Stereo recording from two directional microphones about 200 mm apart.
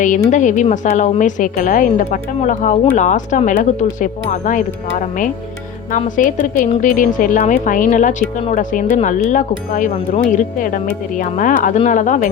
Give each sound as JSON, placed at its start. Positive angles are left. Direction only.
{"t": 0.0, "sound": "speech", "side_deg": 40}